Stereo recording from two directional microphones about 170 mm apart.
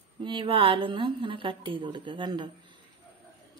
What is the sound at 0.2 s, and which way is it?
A woman's voice, 30° right (ahead or behind).